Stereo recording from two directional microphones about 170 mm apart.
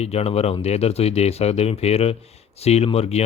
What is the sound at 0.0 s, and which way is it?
Speech, 35° left (ahead or behind).